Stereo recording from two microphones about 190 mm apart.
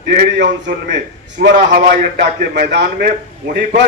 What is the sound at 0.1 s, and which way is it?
A man's voice, 65° right (ahead or behind).